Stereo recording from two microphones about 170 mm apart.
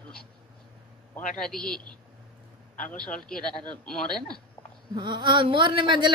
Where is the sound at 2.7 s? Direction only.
50° left (ahead or behind).